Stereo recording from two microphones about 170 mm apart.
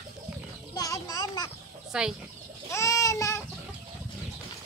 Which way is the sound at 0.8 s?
20° left (ahead or behind).